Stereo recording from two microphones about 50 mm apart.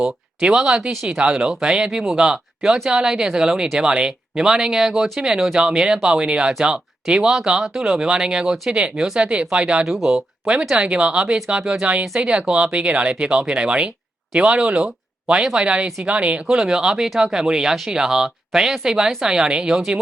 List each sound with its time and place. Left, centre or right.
0.0 s speech: centre
9.8 s speech: centre
10.1 s speech: centre
14.8 s a sound: centre
15.5 s speech: right